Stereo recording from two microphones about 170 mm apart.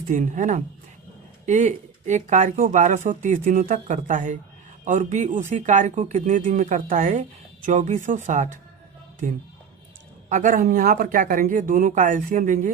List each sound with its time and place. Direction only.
0.1 s speech: 50° right (ahead or behind)